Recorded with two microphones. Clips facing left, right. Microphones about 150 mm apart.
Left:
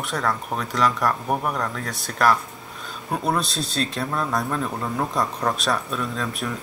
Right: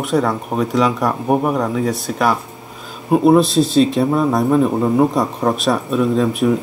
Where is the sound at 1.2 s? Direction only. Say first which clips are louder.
Right 8 dB; 45° right (ahead or behind).